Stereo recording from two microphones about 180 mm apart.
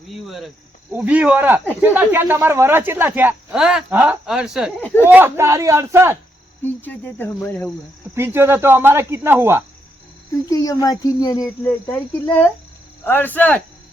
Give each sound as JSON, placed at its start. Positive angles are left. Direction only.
{"t": 0.1, "sound": "speech", "side_deg": 0}
{"t": 4.8, "sound": "speech", "side_deg": 10}
{"t": 5.0, "sound": "speech", "side_deg": -10}
{"t": 6.6, "sound": "speech", "side_deg": 10}
{"t": 8.1, "sound": "speech", "side_deg": -15}
{"t": 10.5, "sound": "speech", "side_deg": 20}
{"t": 11.6, "sound": "speech", "side_deg": 10}